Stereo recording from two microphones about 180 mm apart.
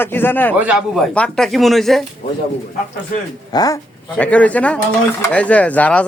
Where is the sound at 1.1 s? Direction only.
5° left (ahead or behind).